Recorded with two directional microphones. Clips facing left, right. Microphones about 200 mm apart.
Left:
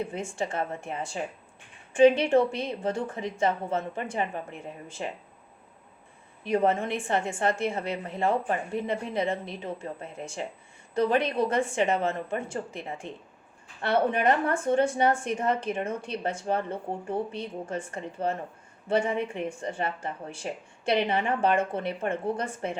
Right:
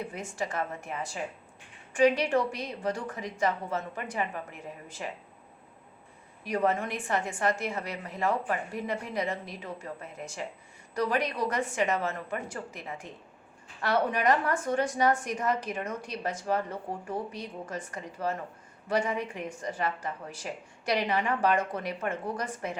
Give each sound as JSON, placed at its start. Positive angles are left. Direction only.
{"t": 0.0, "sound": "a woman's voice", "side_deg": 25}
{"t": 6.4, "sound": "a woman's voice", "side_deg": 25}